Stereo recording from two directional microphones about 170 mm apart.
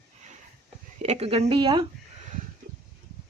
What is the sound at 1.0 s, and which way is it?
Speech, 40° right (ahead or behind).